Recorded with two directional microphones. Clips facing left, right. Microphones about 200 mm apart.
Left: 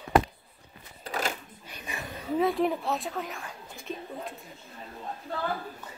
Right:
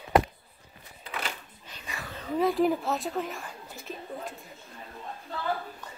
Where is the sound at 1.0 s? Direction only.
40° left (ahead or behind).